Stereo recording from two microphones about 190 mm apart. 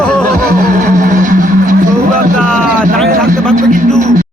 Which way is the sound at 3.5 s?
45° right (ahead or behind).